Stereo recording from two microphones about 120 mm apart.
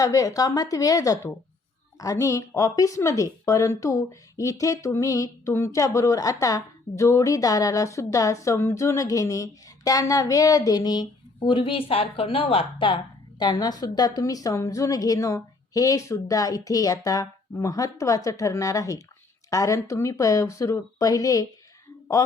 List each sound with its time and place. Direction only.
0.0 s speech: 30° left (ahead or behind)
11.3 s a woman's voice: 45° left (ahead or behind)
13.4 s speech: 35° left (ahead or behind)